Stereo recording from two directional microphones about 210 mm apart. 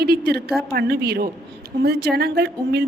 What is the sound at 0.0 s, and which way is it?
A woman's voice, 50° right (ahead or behind).